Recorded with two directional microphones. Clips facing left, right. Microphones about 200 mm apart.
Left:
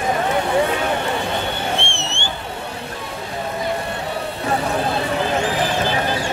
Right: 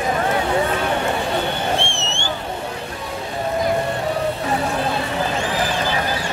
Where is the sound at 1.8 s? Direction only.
55° left (ahead or behind).